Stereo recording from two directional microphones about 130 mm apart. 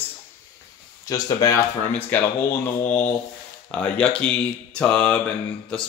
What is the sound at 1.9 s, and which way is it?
Speech, 15° left (ahead or behind).